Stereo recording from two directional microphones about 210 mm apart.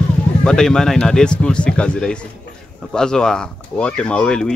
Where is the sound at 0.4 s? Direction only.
5° left (ahead or behind).